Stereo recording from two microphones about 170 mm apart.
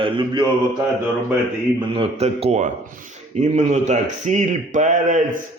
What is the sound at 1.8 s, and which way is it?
A man's voice, 30° right (ahead or behind).